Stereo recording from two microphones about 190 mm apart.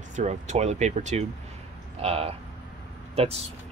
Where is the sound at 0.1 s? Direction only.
40° right (ahead or behind).